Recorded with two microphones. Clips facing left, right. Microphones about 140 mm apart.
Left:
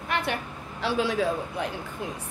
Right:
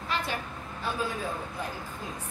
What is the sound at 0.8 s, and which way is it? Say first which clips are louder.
Speech: left 7 dB; 80° left.